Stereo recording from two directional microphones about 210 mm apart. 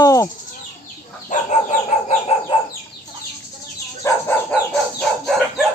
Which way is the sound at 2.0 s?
30° left (ahead or behind).